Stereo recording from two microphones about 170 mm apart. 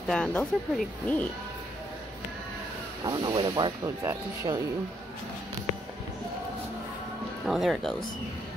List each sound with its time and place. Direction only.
0.1 s speech: 5° left (ahead or behind)
3.1 s speech: 25° right (ahead or behind)
7.4 s speech: centre (ahead or behind)